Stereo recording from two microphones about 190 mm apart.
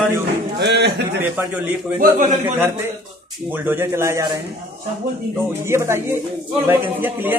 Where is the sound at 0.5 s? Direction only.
60° right (ahead or behind).